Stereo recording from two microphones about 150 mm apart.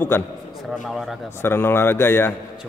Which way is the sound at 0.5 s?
Centre (ahead or behind).